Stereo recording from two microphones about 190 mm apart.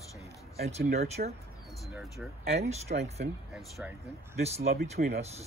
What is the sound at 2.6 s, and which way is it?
Speech, 35° right (ahead or behind).